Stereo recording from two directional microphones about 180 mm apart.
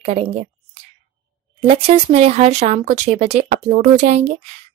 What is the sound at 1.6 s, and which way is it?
Speech, 35° right (ahead or behind).